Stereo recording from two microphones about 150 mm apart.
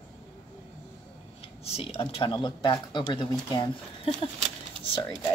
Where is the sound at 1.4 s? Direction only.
40° left (ahead or behind).